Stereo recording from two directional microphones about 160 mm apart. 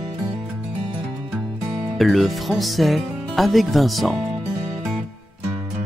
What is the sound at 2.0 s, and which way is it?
Speech, centre (ahead or behind).